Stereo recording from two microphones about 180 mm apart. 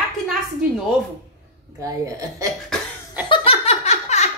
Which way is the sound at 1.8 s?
20° right (ahead or behind).